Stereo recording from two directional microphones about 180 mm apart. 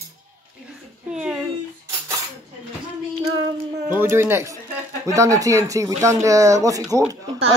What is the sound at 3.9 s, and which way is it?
Speech, 10° right (ahead or behind).